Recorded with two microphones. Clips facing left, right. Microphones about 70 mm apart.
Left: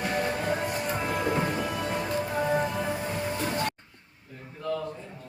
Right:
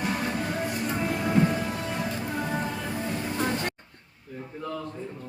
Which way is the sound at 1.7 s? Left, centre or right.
Centre.